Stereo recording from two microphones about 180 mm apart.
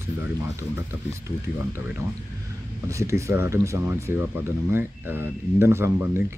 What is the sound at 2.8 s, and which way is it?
Speech, 15° right (ahead or behind).